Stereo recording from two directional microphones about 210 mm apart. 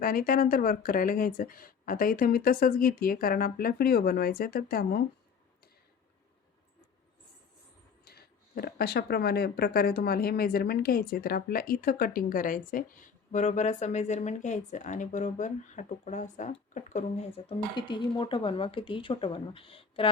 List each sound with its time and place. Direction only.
0.0 s speech: 45° left (ahead or behind)
8.0 s speech: 45° left (ahead or behind)
17.7 s speech: 20° left (ahead or behind)